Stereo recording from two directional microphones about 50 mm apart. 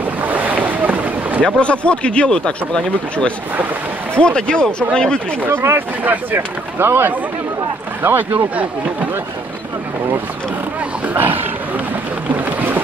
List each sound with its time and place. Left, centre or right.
0.2 s boat: right
1.4 s speech: left
5.7 s speech: right
11.1 s speech: right
12.4 s boat: right